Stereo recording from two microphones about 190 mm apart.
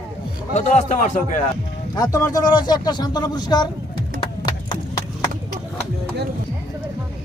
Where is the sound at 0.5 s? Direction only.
40° left (ahead or behind).